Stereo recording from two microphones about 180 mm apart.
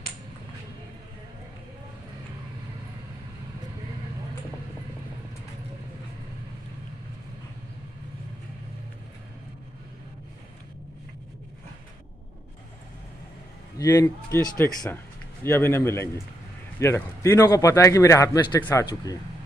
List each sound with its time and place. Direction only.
13.7 s a man's voice: 15° left (ahead or behind)